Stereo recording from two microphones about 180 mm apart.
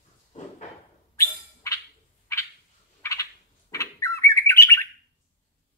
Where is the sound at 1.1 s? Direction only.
15° left (ahead or behind).